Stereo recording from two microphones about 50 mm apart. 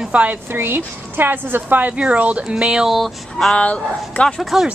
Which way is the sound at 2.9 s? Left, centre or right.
Centre.